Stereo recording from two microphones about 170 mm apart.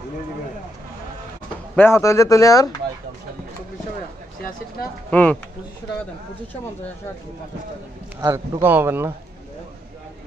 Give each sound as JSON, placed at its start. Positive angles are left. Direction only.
{"t": 1.8, "sound": "speech", "side_deg": 15}
{"t": 5.1, "sound": "speech", "side_deg": 5}
{"t": 8.2, "sound": "a man's voice", "side_deg": -25}
{"t": 8.6, "sound": "speech", "side_deg": -10}